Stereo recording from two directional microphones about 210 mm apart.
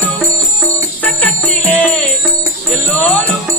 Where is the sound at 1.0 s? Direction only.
5° left (ahead or behind).